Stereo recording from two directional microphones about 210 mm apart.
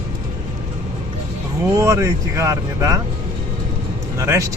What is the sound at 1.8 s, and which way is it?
Speech, 15° right (ahead or behind).